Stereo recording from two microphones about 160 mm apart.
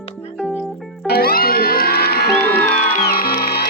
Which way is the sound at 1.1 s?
75° left (ahead or behind).